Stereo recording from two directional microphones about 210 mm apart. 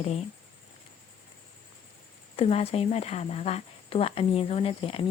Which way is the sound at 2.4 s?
30° left (ahead or behind).